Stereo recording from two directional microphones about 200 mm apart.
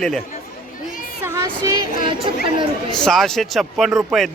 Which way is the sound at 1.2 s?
15° right (ahead or behind).